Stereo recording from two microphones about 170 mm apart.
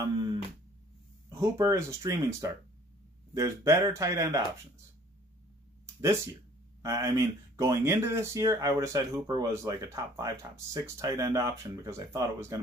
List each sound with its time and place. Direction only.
0.0 s a sound: 20° right (ahead or behind)
1.4 s speech: 15° right (ahead or behind)
6.8 s speech: 20° right (ahead or behind)